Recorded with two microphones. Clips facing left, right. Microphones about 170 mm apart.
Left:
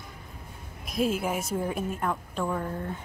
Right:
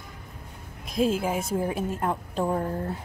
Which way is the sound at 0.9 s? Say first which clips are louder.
Right 3 dB; 30° right (ahead or behind).